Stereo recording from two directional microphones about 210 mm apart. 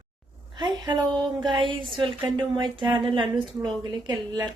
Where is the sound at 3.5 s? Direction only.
Centre (ahead or behind).